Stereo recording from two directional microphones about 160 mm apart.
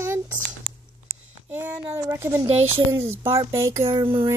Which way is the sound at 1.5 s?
10° right (ahead or behind).